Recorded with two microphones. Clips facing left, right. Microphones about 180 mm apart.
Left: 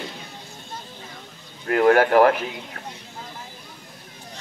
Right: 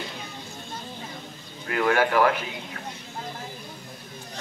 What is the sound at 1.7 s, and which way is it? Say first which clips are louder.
Speech: left 6 dB; 45° left (ahead or behind).